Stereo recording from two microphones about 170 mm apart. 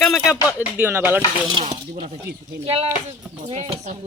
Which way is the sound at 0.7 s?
15° right (ahead or behind).